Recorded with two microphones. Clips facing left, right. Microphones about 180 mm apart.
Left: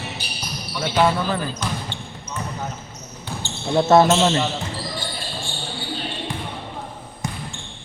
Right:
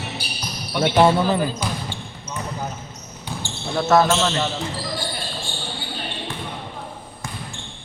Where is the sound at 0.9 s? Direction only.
20° right (ahead or behind).